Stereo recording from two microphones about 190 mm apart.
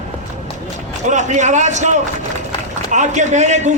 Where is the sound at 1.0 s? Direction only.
40° right (ahead or behind).